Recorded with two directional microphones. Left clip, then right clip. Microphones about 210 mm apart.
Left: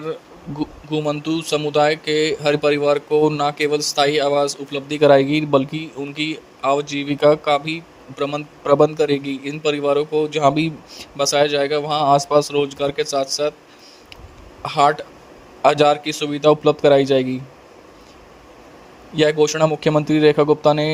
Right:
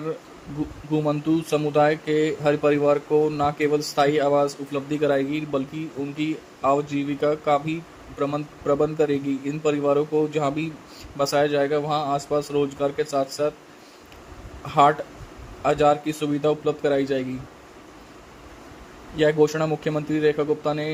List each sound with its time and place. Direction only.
0.9 s speech: 40° left (ahead or behind)
14.6 s speech: 45° left (ahead or behind)
19.1 s speech: 45° left (ahead or behind)